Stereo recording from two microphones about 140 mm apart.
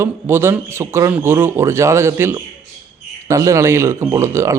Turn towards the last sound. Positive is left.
turn(degrees=-20)  # may be behind; listen again after turning